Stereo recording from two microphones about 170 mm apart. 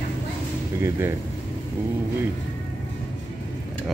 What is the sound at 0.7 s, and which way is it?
Speech, 15° right (ahead or behind).